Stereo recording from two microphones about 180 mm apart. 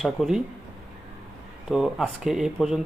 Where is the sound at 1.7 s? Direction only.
5° right (ahead or behind).